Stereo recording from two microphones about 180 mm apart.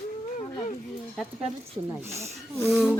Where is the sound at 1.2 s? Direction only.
5° right (ahead or behind).